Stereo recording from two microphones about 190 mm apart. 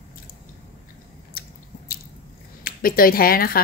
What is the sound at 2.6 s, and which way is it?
Speech, 50° left (ahead or behind).